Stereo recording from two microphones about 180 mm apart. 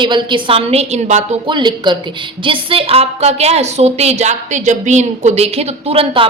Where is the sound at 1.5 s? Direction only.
25° right (ahead or behind).